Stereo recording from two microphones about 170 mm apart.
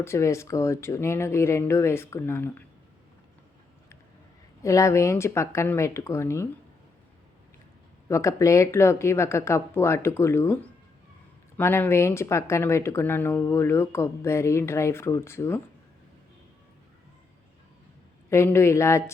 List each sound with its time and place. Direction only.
0.0 s speech: 15° left (ahead or behind)
4.6 s speech: 20° left (ahead or behind)
8.0 s speech: 15° left (ahead or behind)
18.3 s speech: 15° left (ahead or behind)